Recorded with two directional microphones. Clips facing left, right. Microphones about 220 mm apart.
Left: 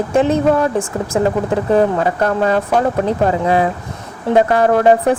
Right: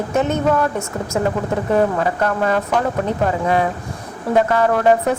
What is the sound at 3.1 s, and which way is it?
Speech, 35° left (ahead or behind).